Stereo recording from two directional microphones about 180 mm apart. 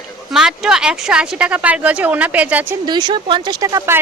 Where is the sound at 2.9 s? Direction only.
25° right (ahead or behind).